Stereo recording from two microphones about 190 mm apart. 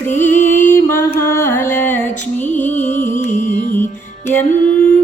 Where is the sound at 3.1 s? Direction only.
40° left (ahead or behind).